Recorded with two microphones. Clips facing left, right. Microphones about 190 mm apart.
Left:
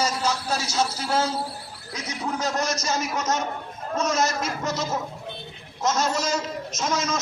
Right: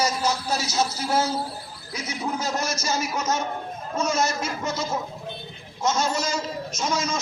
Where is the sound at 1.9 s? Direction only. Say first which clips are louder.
Right 1 dB; 5° right (ahead or behind).